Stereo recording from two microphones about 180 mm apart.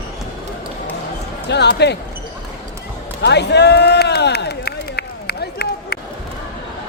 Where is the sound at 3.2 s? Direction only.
70° left (ahead or behind).